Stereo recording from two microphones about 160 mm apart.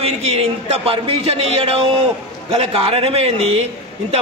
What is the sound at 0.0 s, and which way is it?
Speech, 40° right (ahead or behind).